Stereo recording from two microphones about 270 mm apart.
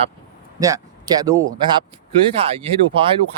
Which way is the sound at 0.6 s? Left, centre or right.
Centre.